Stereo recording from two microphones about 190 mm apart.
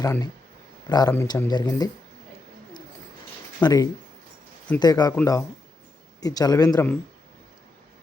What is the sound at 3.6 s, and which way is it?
Speech, 20° left (ahead or behind).